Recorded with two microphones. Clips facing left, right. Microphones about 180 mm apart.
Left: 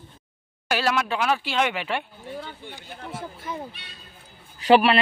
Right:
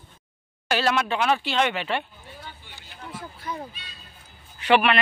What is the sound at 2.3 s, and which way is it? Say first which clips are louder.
Speech: left 8 dB; 55° left (ahead or behind).